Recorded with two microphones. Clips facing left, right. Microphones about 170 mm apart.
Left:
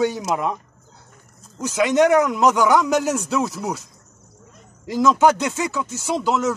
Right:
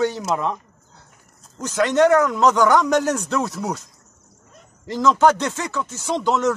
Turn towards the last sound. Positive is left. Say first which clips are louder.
# right 1 dB
turn(degrees=5)  # may be behind; listen again after turning